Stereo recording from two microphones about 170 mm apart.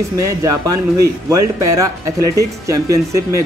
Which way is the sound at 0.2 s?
20° right (ahead or behind).